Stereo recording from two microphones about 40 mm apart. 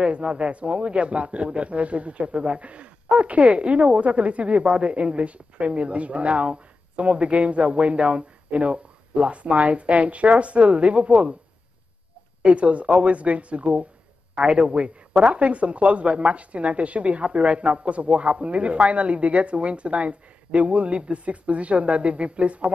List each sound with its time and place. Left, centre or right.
0.0 s a man's voice: right
12.4 s a man's voice: right